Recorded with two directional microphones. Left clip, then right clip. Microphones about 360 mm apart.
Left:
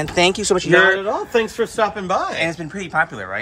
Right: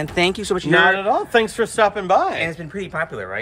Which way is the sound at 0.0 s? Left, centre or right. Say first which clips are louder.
Left 3 dB; centre.